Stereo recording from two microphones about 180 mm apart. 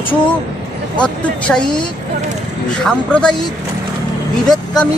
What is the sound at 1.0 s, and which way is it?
Speech, 5° left (ahead or behind).